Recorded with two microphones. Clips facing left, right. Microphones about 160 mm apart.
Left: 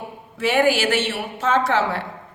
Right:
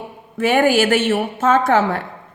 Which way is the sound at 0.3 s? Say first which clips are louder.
Right 4 dB; 50° right (ahead or behind).